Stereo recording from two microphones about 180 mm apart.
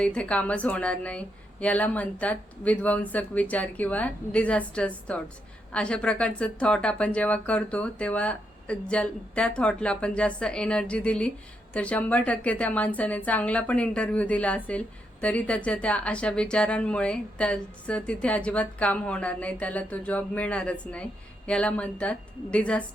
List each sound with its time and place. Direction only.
0.0 s a woman's voice: 5° left (ahead or behind)